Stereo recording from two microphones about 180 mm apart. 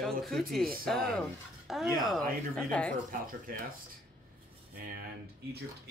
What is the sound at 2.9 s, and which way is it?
Speech, 50° right (ahead or behind).